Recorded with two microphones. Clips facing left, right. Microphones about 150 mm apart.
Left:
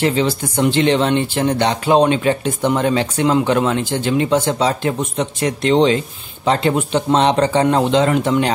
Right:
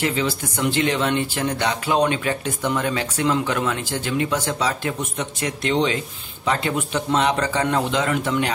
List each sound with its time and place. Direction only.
0.0 s speech: 30° left (ahead or behind)